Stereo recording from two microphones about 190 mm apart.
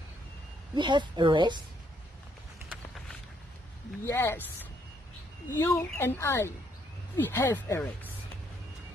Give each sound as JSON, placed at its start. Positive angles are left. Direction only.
{"t": 0.7, "sound": "speech", "side_deg": -25}
{"t": 4.0, "sound": "speech", "side_deg": 10}
{"t": 5.5, "sound": "speech", "side_deg": 15}